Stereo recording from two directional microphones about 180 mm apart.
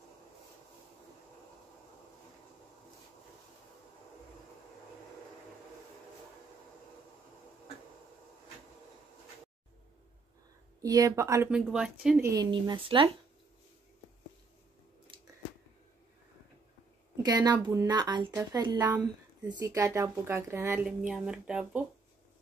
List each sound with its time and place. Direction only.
10.8 s a woman's voice: 20° right (ahead or behind)
11.5 s speech: 5° right (ahead or behind)
12.2 s a woman's voice: 20° right (ahead or behind)
17.2 s a woman's voice: 20° right (ahead or behind); by 21.8 s 5° right (ahead or behind)